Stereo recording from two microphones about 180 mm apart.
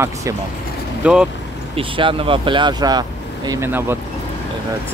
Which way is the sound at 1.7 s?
30° right (ahead or behind).